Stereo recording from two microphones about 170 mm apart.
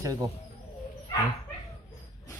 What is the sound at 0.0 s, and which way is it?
Speech, 20° right (ahead or behind).